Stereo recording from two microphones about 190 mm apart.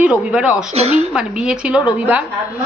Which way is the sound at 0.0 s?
5° right (ahead or behind).